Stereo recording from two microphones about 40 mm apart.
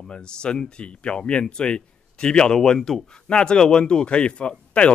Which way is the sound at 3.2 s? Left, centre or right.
Left.